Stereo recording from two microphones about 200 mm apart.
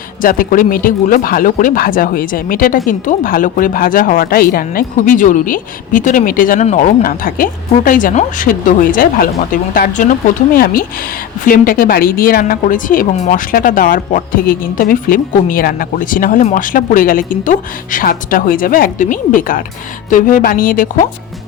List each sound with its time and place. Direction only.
0.2 s speech: 45° left (ahead or behind)